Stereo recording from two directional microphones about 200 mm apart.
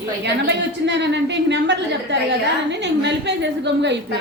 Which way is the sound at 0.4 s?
60° right (ahead or behind).